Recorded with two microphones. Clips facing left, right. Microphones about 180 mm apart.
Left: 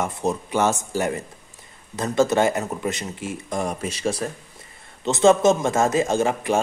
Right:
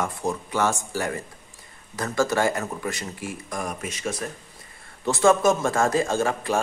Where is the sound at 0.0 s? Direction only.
20° left (ahead or behind).